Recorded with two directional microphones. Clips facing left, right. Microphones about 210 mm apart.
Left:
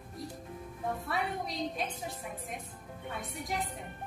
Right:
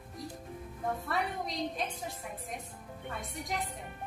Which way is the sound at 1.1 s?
Centre (ahead or behind).